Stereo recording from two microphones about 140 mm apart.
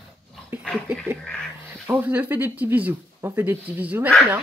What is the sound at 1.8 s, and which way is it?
Speech, 15° right (ahead or behind).